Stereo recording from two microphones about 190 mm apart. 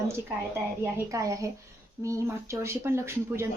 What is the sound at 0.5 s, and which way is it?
Speech, 15° right (ahead or behind).